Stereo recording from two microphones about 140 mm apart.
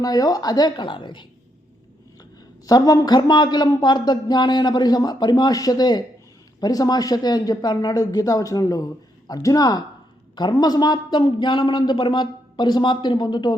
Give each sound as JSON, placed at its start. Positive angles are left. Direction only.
{"t": 0.0, "sound": "speech", "side_deg": 25}
{"t": 2.6, "sound": "a man's voice", "side_deg": 25}